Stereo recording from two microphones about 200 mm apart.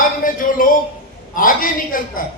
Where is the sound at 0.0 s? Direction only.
45° left (ahead or behind).